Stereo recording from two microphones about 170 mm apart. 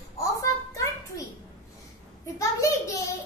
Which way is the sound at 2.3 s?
20° left (ahead or behind).